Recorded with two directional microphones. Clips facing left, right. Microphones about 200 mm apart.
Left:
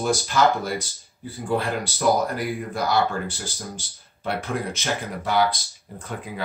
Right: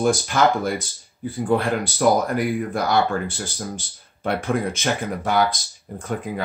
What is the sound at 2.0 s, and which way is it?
Speech, 55° right (ahead or behind).